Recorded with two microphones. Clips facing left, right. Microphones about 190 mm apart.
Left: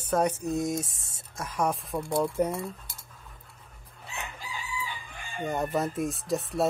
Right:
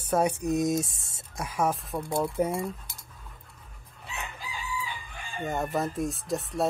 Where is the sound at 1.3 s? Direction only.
10° right (ahead or behind).